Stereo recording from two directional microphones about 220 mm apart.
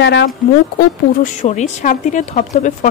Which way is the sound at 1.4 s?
30° left (ahead or behind).